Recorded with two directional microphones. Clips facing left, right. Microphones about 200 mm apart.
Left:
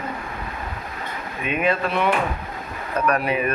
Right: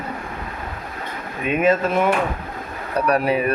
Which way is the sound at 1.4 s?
40° right (ahead or behind).